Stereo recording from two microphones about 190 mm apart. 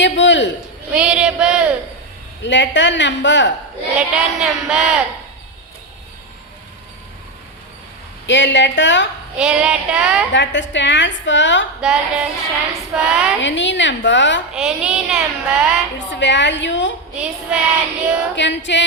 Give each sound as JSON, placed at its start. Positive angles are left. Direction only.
{"t": 0.0, "sound": "a man's voice", "side_deg": 75}
{"t": 0.9, "sound": "speech", "side_deg": -5}
{"t": 2.4, "sound": "a woman's voice", "side_deg": 70}
{"t": 3.9, "sound": "speech", "side_deg": -5}
{"t": 8.3, "sound": "a woman's voice", "side_deg": 70}
{"t": 9.4, "sound": "speech", "side_deg": -5}
{"t": 10.3, "sound": "a woman's voice", "side_deg": 70}
{"t": 11.8, "sound": "speech", "side_deg": -5}
{"t": 13.4, "sound": "a woman's voice", "side_deg": 75}
{"t": 14.5, "sound": "speech", "side_deg": -5}
{"t": 16.0, "sound": "a woman's voice", "side_deg": 70}
{"t": 17.2, "sound": "speech", "side_deg": -5}
{"t": 18.3, "sound": "a woman's voice", "side_deg": 70}